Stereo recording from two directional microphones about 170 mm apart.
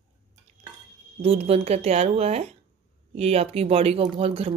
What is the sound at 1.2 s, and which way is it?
Speech, 35° right (ahead or behind).